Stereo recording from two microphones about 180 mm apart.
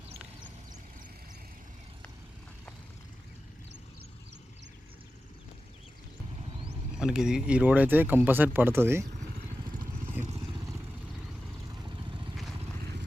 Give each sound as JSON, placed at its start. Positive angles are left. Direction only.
{"t": 6.9, "sound": "speech", "side_deg": -5}
{"t": 11.7, "sound": "vehicle", "side_deg": -25}